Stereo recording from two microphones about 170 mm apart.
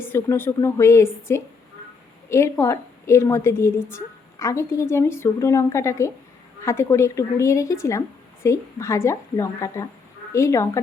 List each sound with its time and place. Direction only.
0.0 s a woman's voice: 15° left (ahead or behind)